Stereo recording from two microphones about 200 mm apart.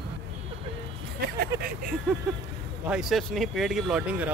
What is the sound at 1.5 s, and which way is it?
Speech, 15° right (ahead or behind).